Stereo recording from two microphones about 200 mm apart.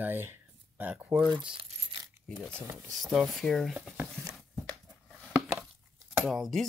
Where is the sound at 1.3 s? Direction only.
25° right (ahead or behind).